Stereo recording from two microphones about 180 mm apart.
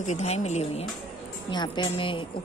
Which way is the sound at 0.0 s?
40° left (ahead or behind).